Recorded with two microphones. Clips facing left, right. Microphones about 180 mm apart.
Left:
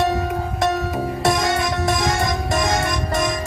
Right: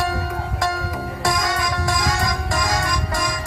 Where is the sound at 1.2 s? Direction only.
25° left (ahead or behind).